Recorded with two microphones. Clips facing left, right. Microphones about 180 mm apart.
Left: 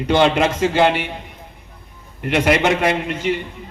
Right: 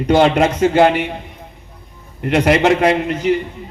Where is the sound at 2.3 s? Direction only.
35° right (ahead or behind).